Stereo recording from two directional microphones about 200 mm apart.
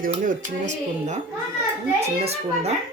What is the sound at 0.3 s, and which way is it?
Speech, 35° right (ahead or behind).